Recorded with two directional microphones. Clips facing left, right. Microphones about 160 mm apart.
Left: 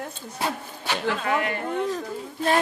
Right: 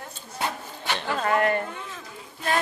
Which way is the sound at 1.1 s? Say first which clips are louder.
Right 3 dB; 45° right (ahead or behind).